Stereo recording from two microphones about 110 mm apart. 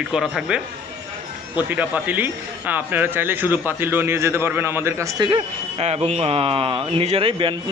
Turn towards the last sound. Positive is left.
turn(degrees=-55)  # may be behind; listen again after turning